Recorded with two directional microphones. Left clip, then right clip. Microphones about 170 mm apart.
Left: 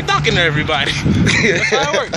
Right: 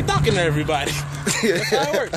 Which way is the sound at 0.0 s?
30° right (ahead or behind).